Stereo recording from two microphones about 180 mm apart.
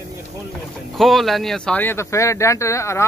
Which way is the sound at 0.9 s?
Centre (ahead or behind).